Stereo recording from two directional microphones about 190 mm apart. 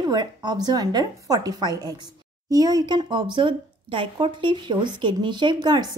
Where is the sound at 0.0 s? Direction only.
20° right (ahead or behind).